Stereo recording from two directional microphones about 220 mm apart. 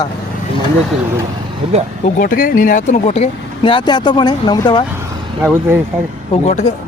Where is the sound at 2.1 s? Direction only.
40° left (ahead or behind); by 4.8 s 20° left (ahead or behind).